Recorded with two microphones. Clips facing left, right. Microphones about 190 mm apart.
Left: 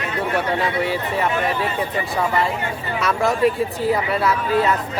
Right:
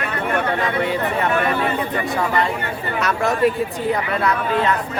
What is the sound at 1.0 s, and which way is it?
Speech, 60° right (ahead or behind).